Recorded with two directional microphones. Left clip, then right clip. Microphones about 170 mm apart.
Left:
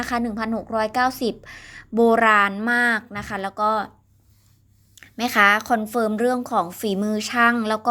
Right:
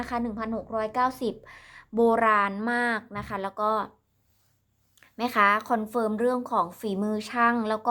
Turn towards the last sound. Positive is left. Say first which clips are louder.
# left 5 dB
turn(degrees=15)  # may be behind; listen again after turning